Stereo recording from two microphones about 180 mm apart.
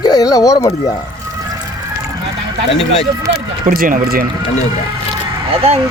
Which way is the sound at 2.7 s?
35° left (ahead or behind).